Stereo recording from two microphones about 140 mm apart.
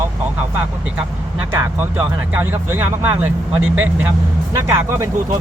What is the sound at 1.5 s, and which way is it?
Speech, 15° right (ahead or behind).